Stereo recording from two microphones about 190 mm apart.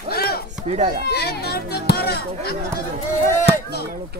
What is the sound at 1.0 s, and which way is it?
Speech, 55° left (ahead or behind).